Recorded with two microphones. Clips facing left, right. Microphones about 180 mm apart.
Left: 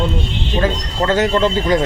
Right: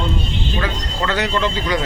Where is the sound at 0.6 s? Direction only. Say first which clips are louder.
Left 9 dB; 45° left (ahead or behind).